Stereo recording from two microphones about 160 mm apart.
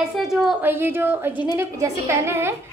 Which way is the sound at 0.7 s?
15° right (ahead or behind).